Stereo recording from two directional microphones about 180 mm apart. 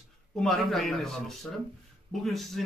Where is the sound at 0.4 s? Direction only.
Centre (ahead or behind).